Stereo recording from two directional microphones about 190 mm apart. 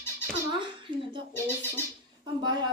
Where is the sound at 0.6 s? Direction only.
25° right (ahead or behind).